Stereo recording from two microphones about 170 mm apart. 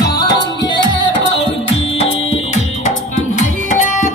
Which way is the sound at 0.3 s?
25° left (ahead or behind).